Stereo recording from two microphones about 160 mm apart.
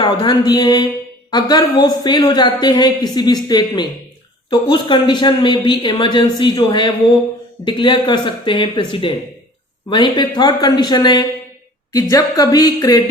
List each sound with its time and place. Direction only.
0.0 s a man's voice: 25° left (ahead or behind)